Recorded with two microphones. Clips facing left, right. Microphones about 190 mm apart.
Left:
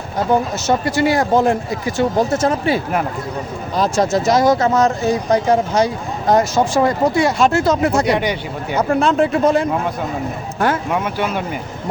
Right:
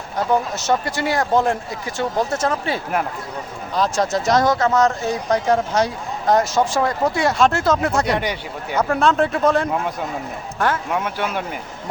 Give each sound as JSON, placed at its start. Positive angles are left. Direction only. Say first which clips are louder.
{"t": 0.5, "sound": "speech", "louder": "left 4 dB", "side_deg": 5}